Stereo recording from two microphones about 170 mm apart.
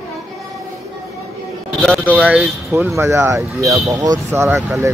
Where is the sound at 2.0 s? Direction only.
10° right (ahead or behind).